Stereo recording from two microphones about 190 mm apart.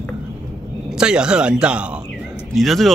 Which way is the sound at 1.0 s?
5° right (ahead or behind).